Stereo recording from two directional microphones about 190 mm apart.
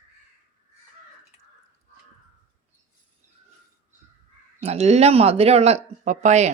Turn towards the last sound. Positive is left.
turn(degrees=-35)  # may be behind; listen again after turning